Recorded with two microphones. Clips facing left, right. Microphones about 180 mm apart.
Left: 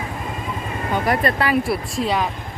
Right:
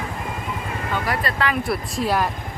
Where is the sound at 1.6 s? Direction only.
Centre (ahead or behind).